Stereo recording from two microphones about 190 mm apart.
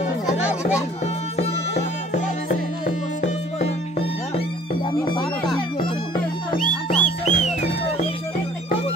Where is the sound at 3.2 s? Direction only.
35° left (ahead or behind).